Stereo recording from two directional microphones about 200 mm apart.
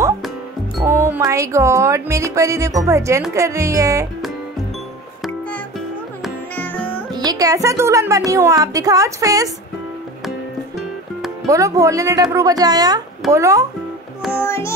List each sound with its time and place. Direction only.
0.8 s speech: 10° right (ahead or behind)
6.2 s music: 10° left (ahead or behind)
7.2 s speech: 20° right (ahead or behind)
11.4 s speech: 15° right (ahead or behind)
14.4 s music: 15° left (ahead or behind)